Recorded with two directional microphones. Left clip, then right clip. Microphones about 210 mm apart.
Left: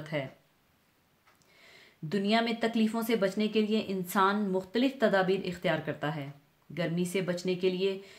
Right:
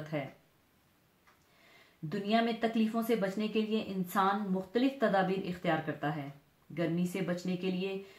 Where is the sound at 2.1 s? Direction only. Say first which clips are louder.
Left 3 dB; 45° left (ahead or behind).